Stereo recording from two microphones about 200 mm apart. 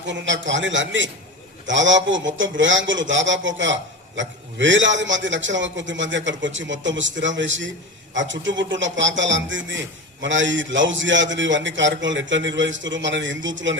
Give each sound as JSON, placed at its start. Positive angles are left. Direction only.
{"t": 0.1, "sound": "a man's voice", "side_deg": -65}